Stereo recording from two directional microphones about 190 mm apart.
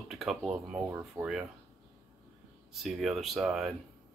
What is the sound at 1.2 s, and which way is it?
Speech, 15° right (ahead or behind).